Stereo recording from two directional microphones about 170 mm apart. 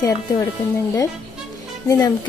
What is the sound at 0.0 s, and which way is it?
Speech, 20° left (ahead or behind).